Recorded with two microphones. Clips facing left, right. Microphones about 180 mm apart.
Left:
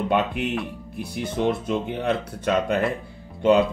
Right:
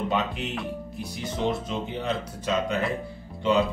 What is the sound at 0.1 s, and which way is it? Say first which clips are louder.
Speech: left 5 dB; 60° left (ahead or behind).